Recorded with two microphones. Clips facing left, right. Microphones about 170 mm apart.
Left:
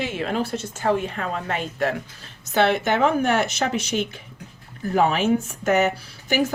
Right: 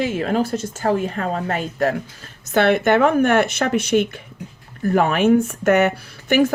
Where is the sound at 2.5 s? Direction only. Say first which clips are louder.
Right 4 dB; 55° right (ahead or behind).